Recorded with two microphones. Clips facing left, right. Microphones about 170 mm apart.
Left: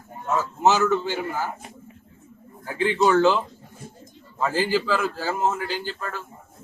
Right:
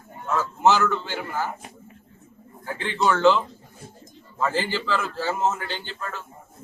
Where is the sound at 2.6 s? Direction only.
10° left (ahead or behind).